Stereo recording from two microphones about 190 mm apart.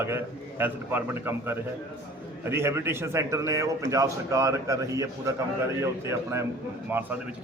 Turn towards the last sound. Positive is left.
turn(degrees=-10)  # may be behind; listen again after turning